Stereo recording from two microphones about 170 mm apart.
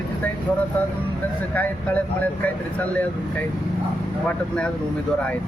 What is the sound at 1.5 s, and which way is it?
Speech, 10° left (ahead or behind).